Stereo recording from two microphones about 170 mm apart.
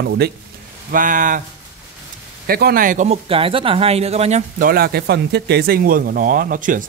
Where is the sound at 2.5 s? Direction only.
65° right (ahead or behind).